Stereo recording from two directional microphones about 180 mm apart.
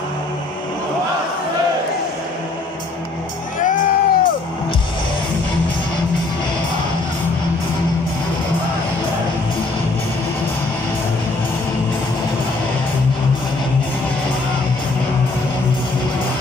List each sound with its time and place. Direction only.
3.6 s music: 45° left (ahead or behind)